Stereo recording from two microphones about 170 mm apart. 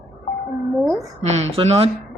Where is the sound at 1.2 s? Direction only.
40° right (ahead or behind).